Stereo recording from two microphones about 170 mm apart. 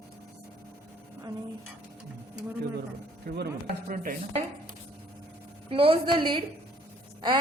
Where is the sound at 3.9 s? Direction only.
55° right (ahead or behind).